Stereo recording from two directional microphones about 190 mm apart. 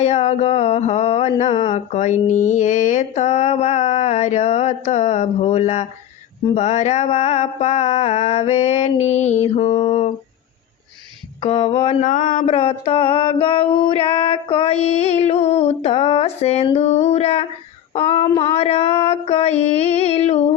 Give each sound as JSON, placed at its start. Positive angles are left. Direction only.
{"t": 0.0, "sound": "mantra", "side_deg": 35}
{"t": 11.3, "sound": "mantra", "side_deg": 30}